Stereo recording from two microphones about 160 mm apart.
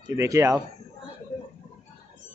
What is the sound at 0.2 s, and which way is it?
Speech, 20° right (ahead or behind).